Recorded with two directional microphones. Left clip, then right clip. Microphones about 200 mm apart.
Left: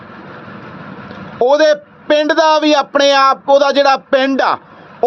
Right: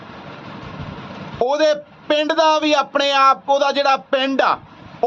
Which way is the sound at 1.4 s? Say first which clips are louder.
Left 6 dB; 30° left (ahead or behind).